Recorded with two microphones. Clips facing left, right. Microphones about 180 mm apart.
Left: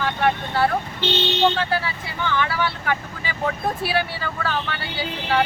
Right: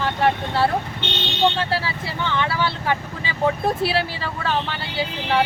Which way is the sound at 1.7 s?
25° right (ahead or behind).